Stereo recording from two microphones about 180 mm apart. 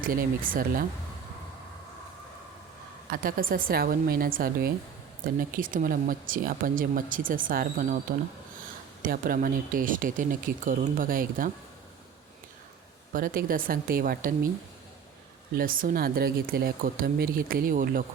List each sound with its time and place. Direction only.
0.0 s speech: 50° right (ahead or behind)
3.1 s speech: 50° right (ahead or behind)
9.0 s speech: 50° right (ahead or behind)
13.1 s speech: 50° right (ahead or behind)
15.5 s speech: 50° right (ahead or behind)